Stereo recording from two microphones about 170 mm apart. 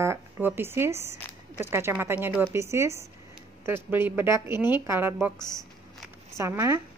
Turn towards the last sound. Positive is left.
turn(degrees=-15)  # may be behind; listen again after turning